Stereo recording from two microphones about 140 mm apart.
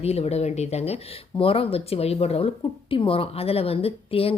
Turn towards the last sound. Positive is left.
turn(degrees=45)  # may be behind; listen again after turning